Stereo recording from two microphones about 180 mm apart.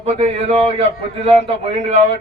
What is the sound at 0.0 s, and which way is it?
A man's voice, 35° right (ahead or behind).